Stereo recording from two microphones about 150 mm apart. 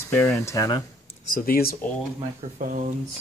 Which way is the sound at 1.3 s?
85° left.